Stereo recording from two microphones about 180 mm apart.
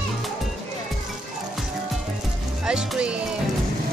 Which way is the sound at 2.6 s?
5° right (ahead or behind).